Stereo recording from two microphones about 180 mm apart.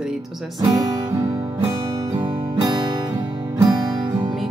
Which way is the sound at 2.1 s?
20° right (ahead or behind).